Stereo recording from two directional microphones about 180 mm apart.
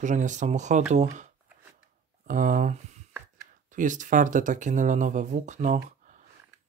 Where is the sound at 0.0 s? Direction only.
45° right (ahead or behind).